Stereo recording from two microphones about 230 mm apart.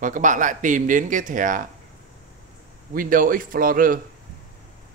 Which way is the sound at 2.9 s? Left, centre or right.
Right.